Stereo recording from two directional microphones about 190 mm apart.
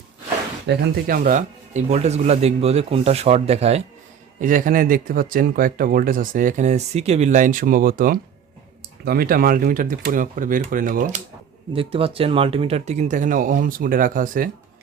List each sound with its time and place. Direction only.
0.7 s speech: 50° right (ahead or behind); by 3.8 s 35° right (ahead or behind)
4.4 s speech: 45° right (ahead or behind)
11.7 s speech: 30° right (ahead or behind); by 14.5 s 45° right (ahead or behind)